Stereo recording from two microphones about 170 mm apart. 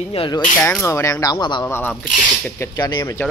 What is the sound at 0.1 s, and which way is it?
Speech, 30° left (ahead or behind).